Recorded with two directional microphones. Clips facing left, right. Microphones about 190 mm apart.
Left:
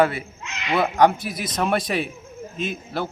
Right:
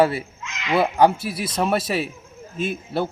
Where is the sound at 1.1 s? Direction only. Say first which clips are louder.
Right 1 dB; 30° right (ahead or behind).